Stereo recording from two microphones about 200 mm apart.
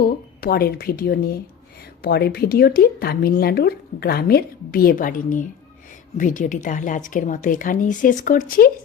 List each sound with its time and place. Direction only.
0.0 s a woman's voice: 50° left (ahead or behind)